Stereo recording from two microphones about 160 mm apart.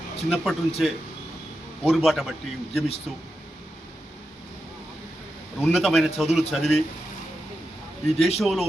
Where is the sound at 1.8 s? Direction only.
Centre (ahead or behind).